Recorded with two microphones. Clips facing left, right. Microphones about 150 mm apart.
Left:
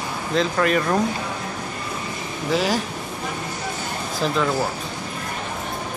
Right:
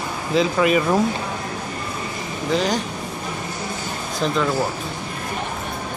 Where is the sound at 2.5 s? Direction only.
5° left (ahead or behind).